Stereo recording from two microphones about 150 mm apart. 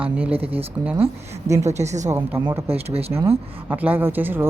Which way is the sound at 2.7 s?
40° right (ahead or behind).